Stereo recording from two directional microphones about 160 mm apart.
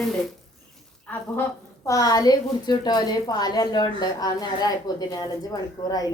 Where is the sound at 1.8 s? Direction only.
20° left (ahead or behind).